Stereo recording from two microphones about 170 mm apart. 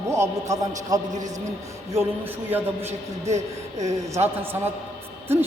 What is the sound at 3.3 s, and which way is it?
A man's voice, 20° right (ahead or behind).